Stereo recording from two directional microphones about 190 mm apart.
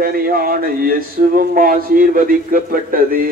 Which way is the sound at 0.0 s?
50° right (ahead or behind).